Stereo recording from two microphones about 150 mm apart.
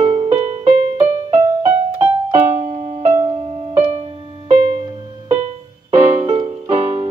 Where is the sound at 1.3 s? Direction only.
20° right (ahead or behind).